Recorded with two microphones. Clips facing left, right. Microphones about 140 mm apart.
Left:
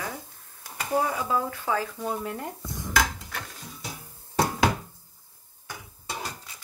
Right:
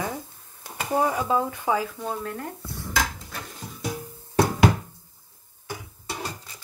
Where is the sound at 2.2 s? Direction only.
15° left (ahead or behind).